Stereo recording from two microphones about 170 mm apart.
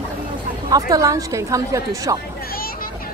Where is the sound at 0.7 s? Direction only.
20° right (ahead or behind).